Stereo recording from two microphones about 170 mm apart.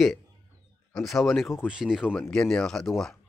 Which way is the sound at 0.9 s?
Centre (ahead or behind).